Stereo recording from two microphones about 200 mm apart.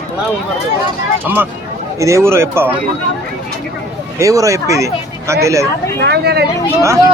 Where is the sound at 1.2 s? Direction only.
10° right (ahead or behind).